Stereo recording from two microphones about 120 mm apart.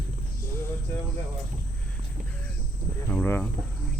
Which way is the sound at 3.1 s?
15° left (ahead or behind).